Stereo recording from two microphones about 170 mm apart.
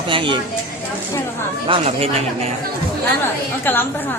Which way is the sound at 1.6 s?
35° right (ahead or behind).